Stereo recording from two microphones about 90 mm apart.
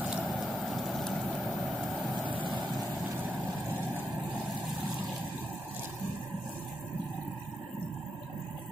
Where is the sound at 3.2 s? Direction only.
20° right (ahead or behind).